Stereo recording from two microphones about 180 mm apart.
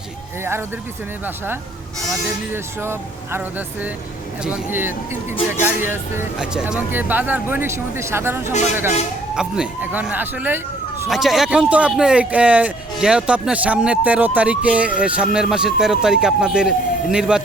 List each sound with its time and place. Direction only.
2.8 s speech: 15° right (ahead or behind)
4.4 s a man's voice: 10° right (ahead or behind)